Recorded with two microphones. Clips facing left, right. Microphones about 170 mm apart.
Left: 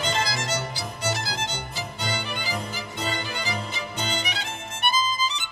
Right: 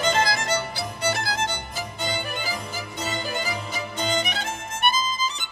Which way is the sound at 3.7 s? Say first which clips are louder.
Right 4 dB; 45° right (ahead or behind).